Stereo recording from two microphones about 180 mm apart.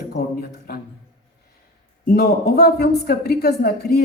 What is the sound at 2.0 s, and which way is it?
A woman's voice, 60° left (ahead or behind).